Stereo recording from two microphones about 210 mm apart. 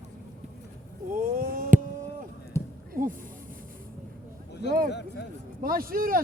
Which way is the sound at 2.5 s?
10° left (ahead or behind).